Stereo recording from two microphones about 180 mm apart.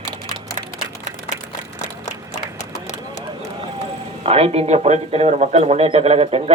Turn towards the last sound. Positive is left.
turn(degrees=-35)  # may be behind; listen again after turning